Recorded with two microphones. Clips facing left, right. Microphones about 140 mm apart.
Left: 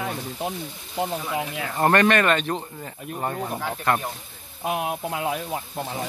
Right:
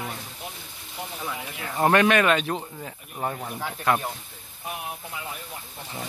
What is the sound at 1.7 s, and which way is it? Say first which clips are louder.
Speech: even; 5° right (ahead or behind).